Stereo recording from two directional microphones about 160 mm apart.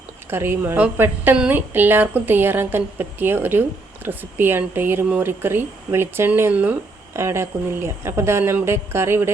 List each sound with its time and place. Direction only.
0.3 s a woman's voice: 15° right (ahead or behind)